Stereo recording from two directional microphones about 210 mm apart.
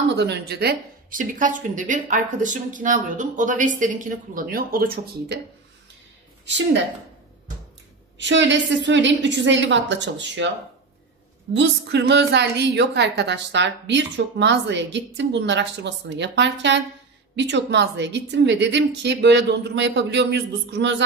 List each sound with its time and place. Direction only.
0.1 s a woman's voice: 55° right (ahead or behind)
6.4 s a woman's voice: 60° right (ahead or behind)
8.2 s a woman's voice: 60° right (ahead or behind)
11.5 s a woman's voice: 55° right (ahead or behind)